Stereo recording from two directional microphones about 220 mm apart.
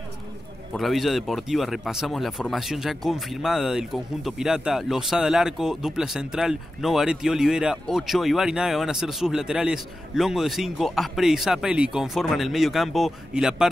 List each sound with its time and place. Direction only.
0.7 s speech: centre (ahead or behind)